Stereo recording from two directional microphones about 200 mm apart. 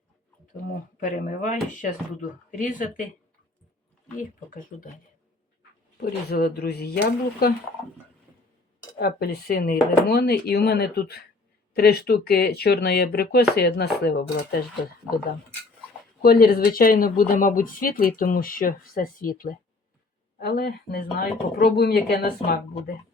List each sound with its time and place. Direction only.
0.9 s speech: 40° left (ahead or behind)
4.2 s speech: 40° left (ahead or behind)
6.0 s speech: 50° left (ahead or behind)
9.0 s speech: 50° left (ahead or behind)
15.1 s speech: 5° right (ahead or behind)
16.2 s speech: 50° left (ahead or behind)